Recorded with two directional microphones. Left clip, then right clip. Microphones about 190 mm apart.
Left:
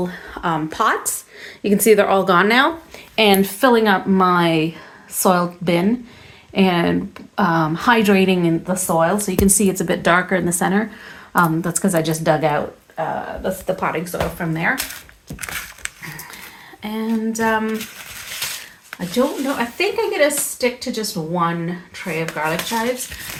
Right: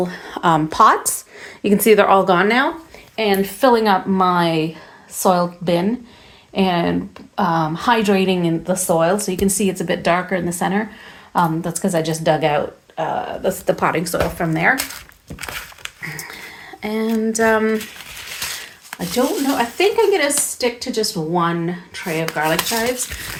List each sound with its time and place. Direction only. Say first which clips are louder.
0.3 s a sound: right 6 dB; 35° right (ahead or behind)
0.7 s speech: right 6 dB; 15° right (ahead or behind)
1.6 s speech: right 1 dB; centre (ahead or behind)
3.2 s a woman's voice: left 3 dB; 25° left (ahead or behind)
3.6 s a woman's voice: right 3 dB; 5° left (ahead or behind)
9.4 s a woman's voice: left 2 dB; 15° left (ahead or behind)
13.7 s speech: right 4 dB; 30° right (ahead or behind)
14.0 s speech: right 3 dB; 45° right (ahead or behind)
15.4 s a sound: left 1 dB; 15° right (ahead or behind)
16.8 s speech: right 4 dB; 45° right (ahead or behind)
17.1 s female singing: right 3 dB; 40° right (ahead or behind)
18.9 s speech: even; 45° right (ahead or behind)